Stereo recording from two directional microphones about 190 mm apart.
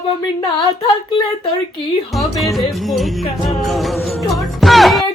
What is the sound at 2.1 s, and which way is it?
Music, centre (ahead or behind).